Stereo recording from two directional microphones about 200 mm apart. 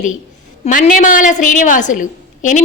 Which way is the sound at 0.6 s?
40° left (ahead or behind).